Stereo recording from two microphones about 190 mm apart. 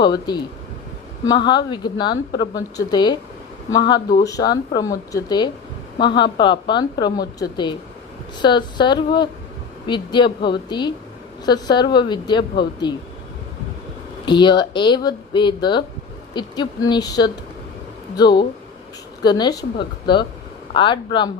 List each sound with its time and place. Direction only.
0.0 s speech: 25° left (ahead or behind)
14.3 s speech: 25° left (ahead or behind)